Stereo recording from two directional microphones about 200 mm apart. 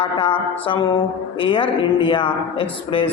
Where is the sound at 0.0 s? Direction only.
25° left (ahead or behind).